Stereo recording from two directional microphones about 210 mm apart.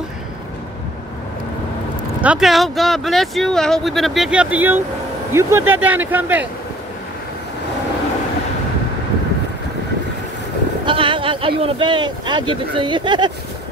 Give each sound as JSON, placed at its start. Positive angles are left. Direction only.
{"t": 2.2, "sound": "speech", "side_deg": 0}
{"t": 10.9, "sound": "speech", "side_deg": -25}